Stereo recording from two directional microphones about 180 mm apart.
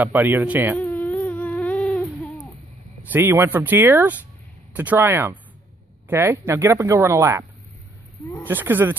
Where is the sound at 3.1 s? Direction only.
10° right (ahead or behind).